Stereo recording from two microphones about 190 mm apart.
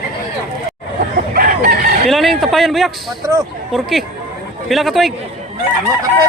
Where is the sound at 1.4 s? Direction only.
50° right (ahead or behind).